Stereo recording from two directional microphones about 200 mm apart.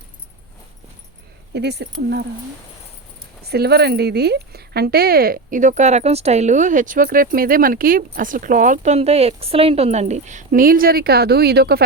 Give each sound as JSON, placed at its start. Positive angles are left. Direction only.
{"t": 1.5, "sound": "speech", "side_deg": -55}
{"t": 3.4, "sound": "speech", "side_deg": -55}